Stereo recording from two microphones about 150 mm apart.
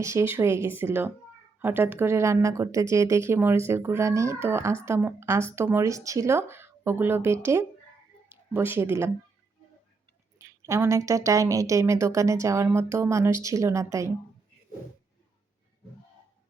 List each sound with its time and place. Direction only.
0.0 s speech: 20° right (ahead or behind)
10.3 s speech: 20° right (ahead or behind)